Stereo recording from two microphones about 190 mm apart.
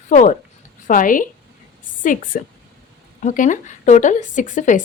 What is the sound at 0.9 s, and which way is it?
Speech, 45° left (ahead or behind).